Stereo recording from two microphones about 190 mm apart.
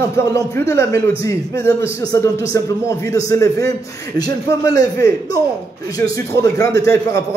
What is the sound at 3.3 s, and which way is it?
A man's voice, 15° left (ahead or behind).